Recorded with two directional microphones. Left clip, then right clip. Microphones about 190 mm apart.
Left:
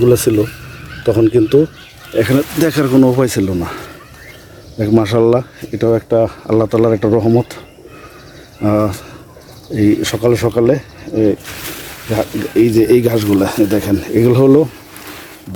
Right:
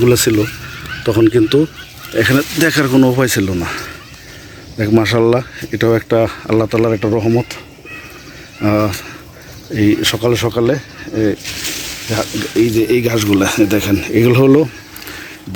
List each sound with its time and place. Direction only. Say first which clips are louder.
0.1 s speech: left 1 dB; centre (ahead or behind)
6.5 s speech: left 3 dB; 10° left (ahead or behind)
8.6 s speech: even; 10° left (ahead or behind); by 13.1 s 25° left (ahead or behind)
13.1 s speech: even; 10° left (ahead or behind)